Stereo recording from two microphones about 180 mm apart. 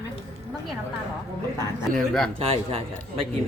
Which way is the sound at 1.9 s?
5° left (ahead or behind).